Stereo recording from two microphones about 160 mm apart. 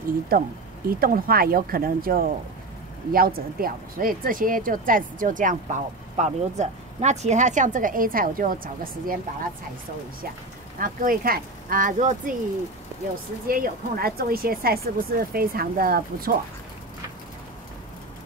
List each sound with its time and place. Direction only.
0.3 s speech: 65° right (ahead or behind)
10.8 s speech: 60° right (ahead or behind)
13.5 s speech: 65° right (ahead or behind)